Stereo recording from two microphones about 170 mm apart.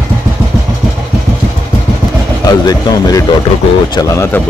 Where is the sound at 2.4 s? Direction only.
20° left (ahead or behind).